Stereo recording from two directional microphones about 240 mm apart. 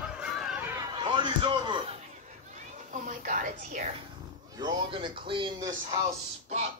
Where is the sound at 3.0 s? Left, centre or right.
Right.